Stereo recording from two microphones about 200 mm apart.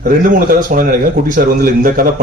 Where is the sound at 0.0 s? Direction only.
45° right (ahead or behind).